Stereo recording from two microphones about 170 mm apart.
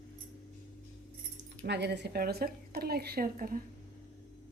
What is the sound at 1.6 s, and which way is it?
A woman's voice, 85° right.